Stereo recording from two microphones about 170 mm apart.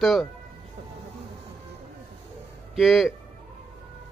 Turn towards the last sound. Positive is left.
turn(degrees=0)  # may be behind; listen again after turning